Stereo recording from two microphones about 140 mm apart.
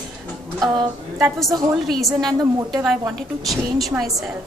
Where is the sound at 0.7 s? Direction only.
30° right (ahead or behind).